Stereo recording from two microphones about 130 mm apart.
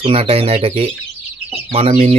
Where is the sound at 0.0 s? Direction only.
45° right (ahead or behind).